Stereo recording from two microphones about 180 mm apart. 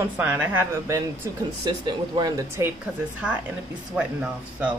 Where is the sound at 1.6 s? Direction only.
25° right (ahead or behind).